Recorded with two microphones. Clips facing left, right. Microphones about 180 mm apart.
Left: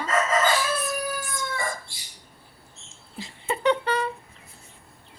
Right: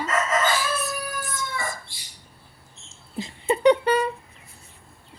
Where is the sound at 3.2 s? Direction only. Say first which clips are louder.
Right 6 dB; 20° right (ahead or behind).